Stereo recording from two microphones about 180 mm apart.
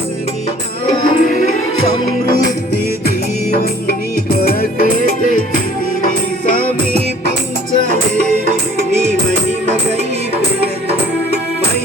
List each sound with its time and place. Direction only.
1.2 s music: 45° left (ahead or behind)
4.4 s music: 55° left (ahead or behind)